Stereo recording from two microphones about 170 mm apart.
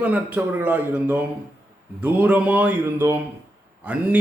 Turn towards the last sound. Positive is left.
turn(degrees=-10)  # may be behind; listen again after turning